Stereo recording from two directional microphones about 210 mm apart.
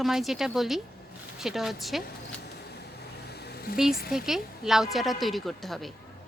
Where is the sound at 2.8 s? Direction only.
50° left (ahead or behind).